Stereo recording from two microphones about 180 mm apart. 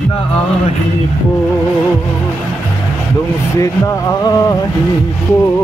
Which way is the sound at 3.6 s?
20° left (ahead or behind).